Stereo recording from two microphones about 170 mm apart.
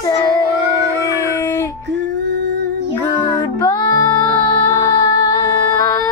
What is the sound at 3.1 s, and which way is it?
Music, 25° left (ahead or behind).